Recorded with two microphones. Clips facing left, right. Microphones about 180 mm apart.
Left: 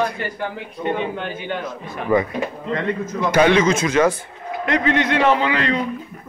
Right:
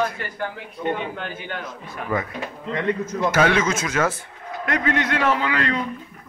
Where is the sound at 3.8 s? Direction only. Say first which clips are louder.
Left 6 dB; 10° left (ahead or behind).